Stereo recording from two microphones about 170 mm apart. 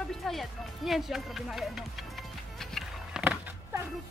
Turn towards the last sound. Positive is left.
turn(degrees=-10)  # may be behind; listen again after turning